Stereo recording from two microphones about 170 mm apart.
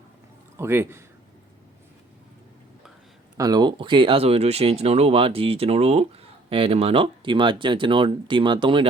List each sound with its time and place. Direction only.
0.5 s speech: 15° right (ahead or behind)
3.3 s speech: 20° right (ahead or behind)